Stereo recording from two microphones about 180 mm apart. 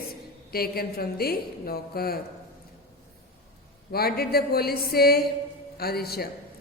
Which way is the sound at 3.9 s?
60° left (ahead or behind).